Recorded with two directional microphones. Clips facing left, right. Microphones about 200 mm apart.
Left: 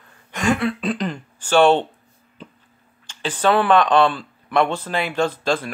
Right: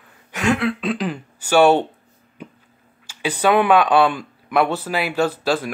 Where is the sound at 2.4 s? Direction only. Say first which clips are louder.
Right 3 dB; 15° right (ahead or behind).